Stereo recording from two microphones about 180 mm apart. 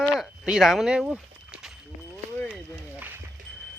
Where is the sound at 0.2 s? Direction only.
5° right (ahead or behind).